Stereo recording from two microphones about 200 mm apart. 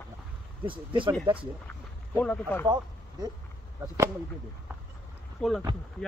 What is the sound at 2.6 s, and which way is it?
Speech, 20° right (ahead or behind).